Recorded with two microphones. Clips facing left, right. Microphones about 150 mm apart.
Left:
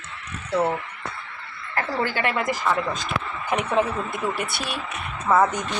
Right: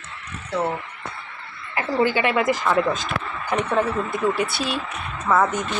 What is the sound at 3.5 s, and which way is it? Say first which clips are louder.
Speech: right 1 dB; 10° left (ahead or behind).